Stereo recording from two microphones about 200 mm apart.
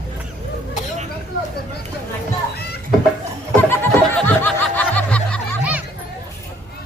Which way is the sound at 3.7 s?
10° left (ahead or behind).